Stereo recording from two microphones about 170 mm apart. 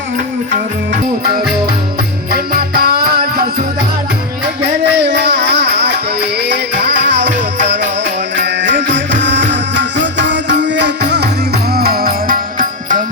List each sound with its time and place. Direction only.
2.3 s music: 60° right (ahead or behind)
4.8 s music: 90° right
11.1 s music: 75° right (ahead or behind); by 13.0 s 55° right (ahead or behind)